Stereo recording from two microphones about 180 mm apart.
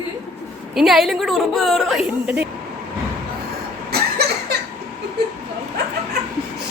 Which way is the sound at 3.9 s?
60° right (ahead or behind).